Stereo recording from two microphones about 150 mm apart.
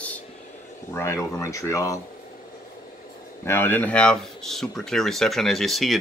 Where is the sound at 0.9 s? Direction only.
15° left (ahead or behind).